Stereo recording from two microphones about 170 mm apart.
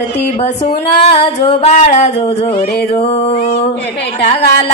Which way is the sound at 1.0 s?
35° left (ahead or behind).